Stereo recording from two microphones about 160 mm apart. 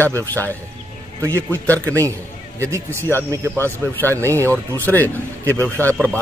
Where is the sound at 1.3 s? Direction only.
10° left (ahead or behind).